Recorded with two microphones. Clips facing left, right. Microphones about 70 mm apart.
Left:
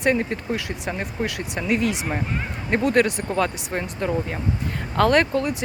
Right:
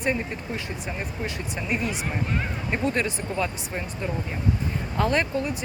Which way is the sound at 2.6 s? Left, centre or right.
Left.